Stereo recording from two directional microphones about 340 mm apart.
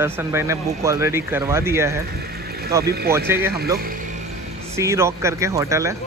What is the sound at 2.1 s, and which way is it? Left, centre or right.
Vehicle, right.